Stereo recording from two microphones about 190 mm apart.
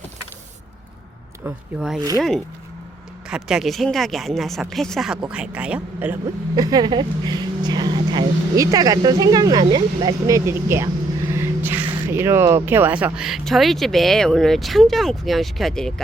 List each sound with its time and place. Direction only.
1.5 s speech: 5° right (ahead or behind)
3.2 s speech: 5° right (ahead or behind)
6.6 s speech: 20° right (ahead or behind); by 15.9 s centre (ahead or behind)